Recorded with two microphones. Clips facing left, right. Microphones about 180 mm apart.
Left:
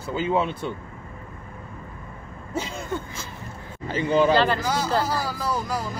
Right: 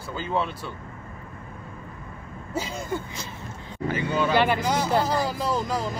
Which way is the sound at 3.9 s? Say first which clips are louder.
Left 5 dB; 35° left (ahead or behind).